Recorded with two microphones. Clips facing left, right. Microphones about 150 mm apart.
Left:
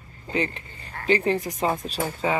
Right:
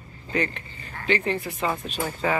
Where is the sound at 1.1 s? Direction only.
35° left (ahead or behind).